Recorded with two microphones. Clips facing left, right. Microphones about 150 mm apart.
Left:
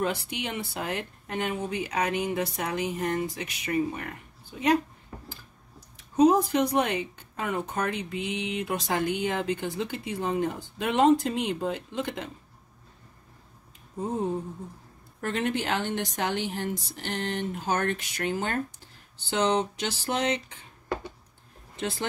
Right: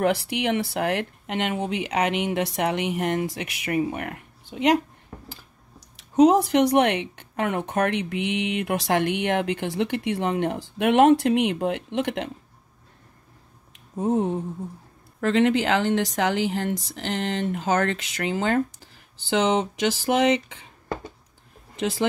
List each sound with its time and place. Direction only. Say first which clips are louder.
0.0 s speech: right 7 dB; 80° right
5.9 s speech: right 4 dB; 80° right
13.7 s speech: right 7 dB; 75° right (ahead or behind)
15.1 s speech: right 8 dB; 90° right
21.7 s speech: right 6 dB; 90° right